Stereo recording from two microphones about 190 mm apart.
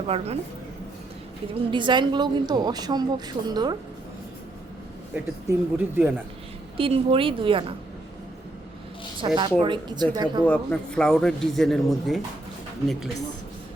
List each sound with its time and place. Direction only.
1.5 s a woman's voice: 25° right (ahead or behind)
5.1 s speech: 10° right (ahead or behind)
6.7 s a woman's voice: 30° right (ahead or behind)
9.2 s a woman's voice: 25° right (ahead or behind)
10.4 s speech: 5° left (ahead or behind)